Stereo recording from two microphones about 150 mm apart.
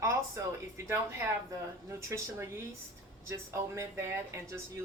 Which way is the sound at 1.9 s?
20° right (ahead or behind).